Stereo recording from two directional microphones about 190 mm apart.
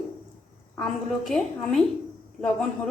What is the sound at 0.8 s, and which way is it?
A woman's voice, centre (ahead or behind).